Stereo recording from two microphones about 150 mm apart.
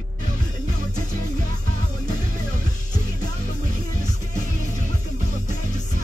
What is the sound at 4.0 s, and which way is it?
Music, 55° left (ahead or behind).